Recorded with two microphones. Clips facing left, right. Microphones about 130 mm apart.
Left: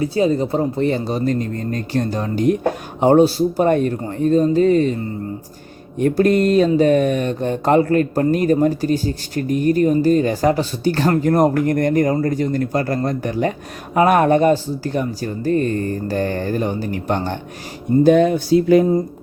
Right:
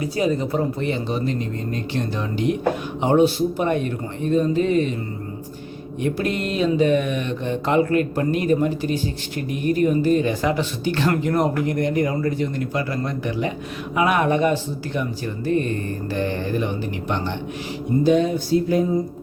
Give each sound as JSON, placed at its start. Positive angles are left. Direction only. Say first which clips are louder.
{"t": 0.0, "sound": "speech", "louder": "left 4 dB", "side_deg": 35}
{"t": 6.0, "sound": "speech", "louder": "left 9 dB", "side_deg": 45}
{"t": 18.0, "sound": "a sound", "louder": "left 5 dB", "side_deg": 55}